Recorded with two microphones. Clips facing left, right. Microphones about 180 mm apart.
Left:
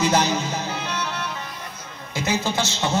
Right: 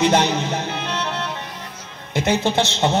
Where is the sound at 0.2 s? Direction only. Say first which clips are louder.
Right 3 dB; 60° right (ahead or behind).